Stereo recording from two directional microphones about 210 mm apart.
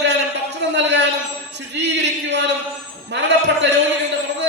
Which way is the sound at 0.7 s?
55° right (ahead or behind).